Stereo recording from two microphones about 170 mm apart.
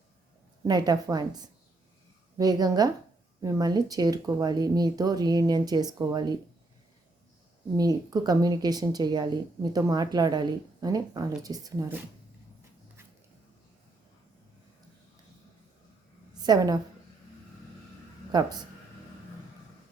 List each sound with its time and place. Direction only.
0.6 s speech: 25° right (ahead or behind)
7.8 s speech: 20° right (ahead or behind)
16.4 s a woman's voice: 25° right (ahead or behind)
18.3 s speech: 25° right (ahead or behind)